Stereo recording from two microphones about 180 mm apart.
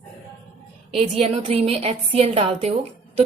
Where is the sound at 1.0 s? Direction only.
35° right (ahead or behind).